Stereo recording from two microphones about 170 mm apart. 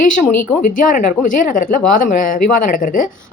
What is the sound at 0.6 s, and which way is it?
A woman's voice, 50° left (ahead or behind).